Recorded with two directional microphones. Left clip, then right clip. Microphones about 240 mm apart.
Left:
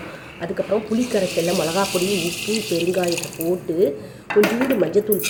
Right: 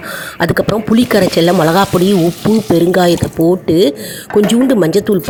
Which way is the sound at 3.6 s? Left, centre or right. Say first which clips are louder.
Right 9 dB; right.